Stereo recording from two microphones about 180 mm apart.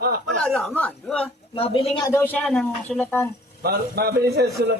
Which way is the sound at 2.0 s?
15° left (ahead or behind).